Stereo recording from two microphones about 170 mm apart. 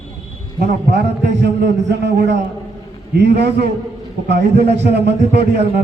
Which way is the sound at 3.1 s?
75° right (ahead or behind).